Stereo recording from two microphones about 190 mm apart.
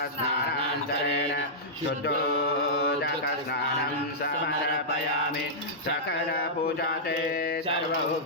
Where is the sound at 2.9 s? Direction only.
60° left (ahead or behind).